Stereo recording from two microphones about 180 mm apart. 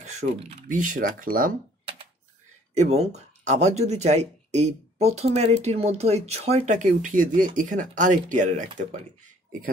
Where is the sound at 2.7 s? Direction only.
35° right (ahead or behind).